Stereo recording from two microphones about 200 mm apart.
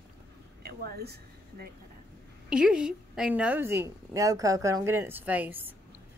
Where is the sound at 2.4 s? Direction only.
5° right (ahead or behind).